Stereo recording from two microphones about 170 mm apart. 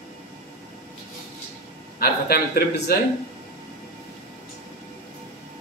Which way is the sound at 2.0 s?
65° left (ahead or behind).